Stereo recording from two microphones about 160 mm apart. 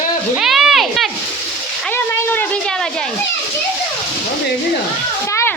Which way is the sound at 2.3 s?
10° left (ahead or behind).